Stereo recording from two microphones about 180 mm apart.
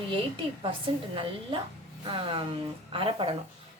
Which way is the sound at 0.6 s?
30° right (ahead or behind).